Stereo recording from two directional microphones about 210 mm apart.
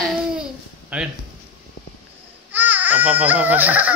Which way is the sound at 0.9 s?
5° right (ahead or behind).